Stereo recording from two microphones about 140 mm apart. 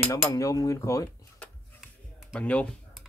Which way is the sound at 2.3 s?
10° left (ahead or behind).